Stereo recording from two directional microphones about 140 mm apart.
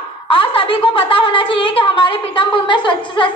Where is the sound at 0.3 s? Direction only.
40° left (ahead or behind).